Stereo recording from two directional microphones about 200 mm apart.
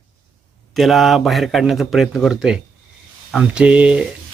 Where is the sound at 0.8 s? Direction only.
Centre (ahead or behind).